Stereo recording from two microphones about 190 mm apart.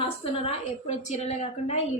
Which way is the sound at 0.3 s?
35° left (ahead or behind).